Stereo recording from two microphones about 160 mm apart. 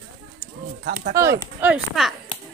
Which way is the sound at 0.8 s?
70° right (ahead or behind).